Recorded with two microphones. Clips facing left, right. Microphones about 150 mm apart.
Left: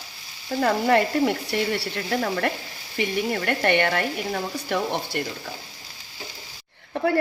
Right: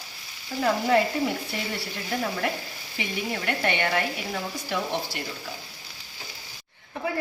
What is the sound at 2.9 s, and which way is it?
Speech, 55° left (ahead or behind).